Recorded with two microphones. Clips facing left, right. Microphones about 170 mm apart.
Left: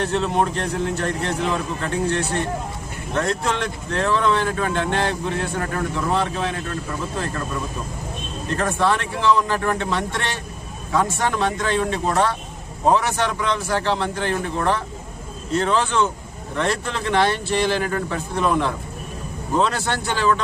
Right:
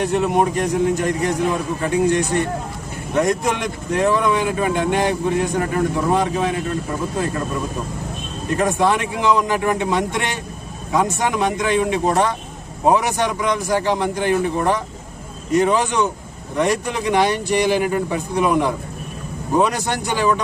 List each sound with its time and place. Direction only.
0.0 s speech: 15° right (ahead or behind)
8.5 s speech: 15° right (ahead or behind)